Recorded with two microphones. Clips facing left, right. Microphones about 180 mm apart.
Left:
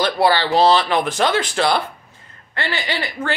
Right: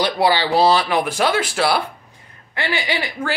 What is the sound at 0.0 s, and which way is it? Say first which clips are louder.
Speech: left 1 dB; 15° right (ahead or behind).